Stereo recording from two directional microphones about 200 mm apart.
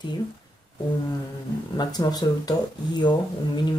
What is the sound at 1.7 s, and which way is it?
Speech, 20° left (ahead or behind).